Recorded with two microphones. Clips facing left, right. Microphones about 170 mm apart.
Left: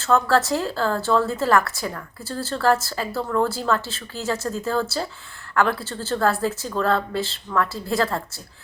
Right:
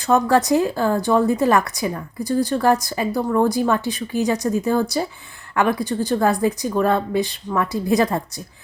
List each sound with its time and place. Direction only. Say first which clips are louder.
0.0 s speech: right 3 dB; 15° right (ahead or behind)